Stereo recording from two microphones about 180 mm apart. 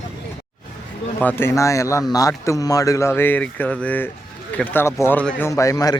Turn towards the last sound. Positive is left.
turn(degrees=20)  # may be behind; listen again after turning